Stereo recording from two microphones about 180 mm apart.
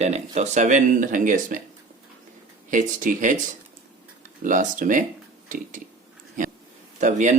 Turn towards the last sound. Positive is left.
turn(degrees=-40)  # may be behind; listen again after turning